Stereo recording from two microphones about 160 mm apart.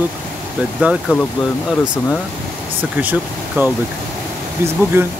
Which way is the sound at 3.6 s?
10° right (ahead or behind).